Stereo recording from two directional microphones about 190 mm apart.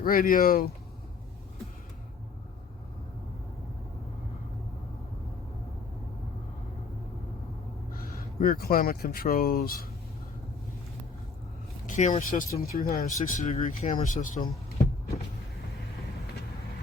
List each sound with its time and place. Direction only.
0.0 s speech: 50° left (ahead or behind)
7.9 s speech: 50° left (ahead or behind)
11.9 s speech: 40° left (ahead or behind)